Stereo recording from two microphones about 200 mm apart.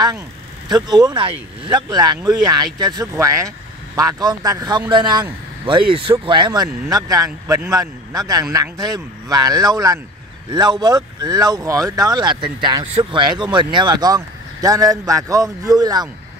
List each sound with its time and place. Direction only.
0.7 s a man's voice: 20° right (ahead or behind)